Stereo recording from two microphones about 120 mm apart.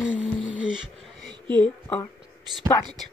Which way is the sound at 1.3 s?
40° right (ahead or behind).